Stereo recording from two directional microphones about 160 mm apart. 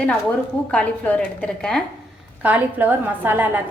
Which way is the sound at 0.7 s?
10° left (ahead or behind).